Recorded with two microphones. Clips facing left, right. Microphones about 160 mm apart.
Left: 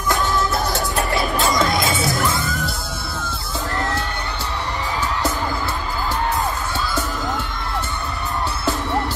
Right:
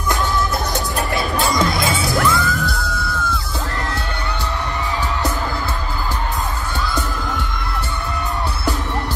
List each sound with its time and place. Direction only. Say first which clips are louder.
1.4 s music: right 1 dB; 20° left (ahead or behind)